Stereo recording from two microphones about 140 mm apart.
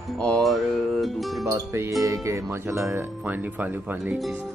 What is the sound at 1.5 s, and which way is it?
Speech, 20° right (ahead or behind).